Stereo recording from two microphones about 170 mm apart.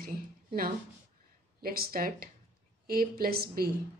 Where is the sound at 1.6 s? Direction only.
60° right (ahead or behind).